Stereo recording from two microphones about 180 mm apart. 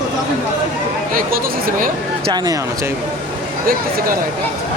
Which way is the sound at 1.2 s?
50° right (ahead or behind).